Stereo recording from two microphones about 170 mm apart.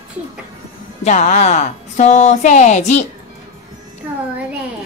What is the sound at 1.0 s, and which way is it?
Speech, 45° left (ahead or behind).